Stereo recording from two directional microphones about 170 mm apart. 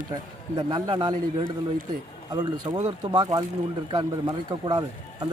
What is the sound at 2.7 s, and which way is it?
Speech, 25° right (ahead or behind).